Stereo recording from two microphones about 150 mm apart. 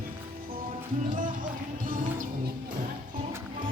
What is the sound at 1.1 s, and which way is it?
Music, 65° right (ahead or behind).